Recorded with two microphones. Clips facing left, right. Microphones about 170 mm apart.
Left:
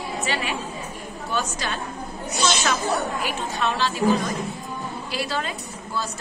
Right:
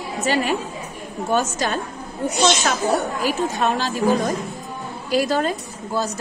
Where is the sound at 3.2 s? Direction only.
45° right (ahead or behind).